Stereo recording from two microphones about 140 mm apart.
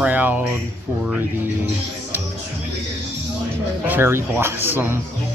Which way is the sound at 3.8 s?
15° right (ahead or behind).